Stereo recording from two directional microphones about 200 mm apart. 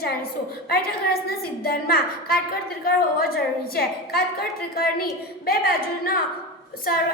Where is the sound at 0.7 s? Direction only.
50° left (ahead or behind).